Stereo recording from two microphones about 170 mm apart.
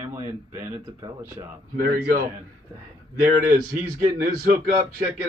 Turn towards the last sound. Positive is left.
turn(degrees=-60)  # may be behind; listen again after turning